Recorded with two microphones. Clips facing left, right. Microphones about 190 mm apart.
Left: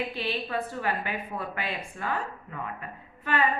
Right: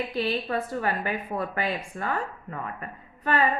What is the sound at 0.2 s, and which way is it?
A woman's voice, 40° right (ahead or behind).